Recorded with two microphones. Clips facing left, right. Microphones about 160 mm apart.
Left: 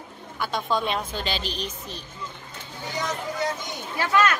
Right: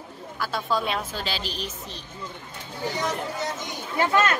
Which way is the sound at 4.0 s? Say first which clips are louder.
Even; 25° right (ahead or behind).